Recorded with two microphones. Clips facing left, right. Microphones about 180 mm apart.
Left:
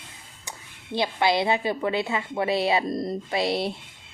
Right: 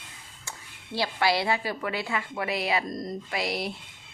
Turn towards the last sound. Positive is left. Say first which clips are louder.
# left 5 dB
turn(degrees=25)  # may be behind; listen again after turning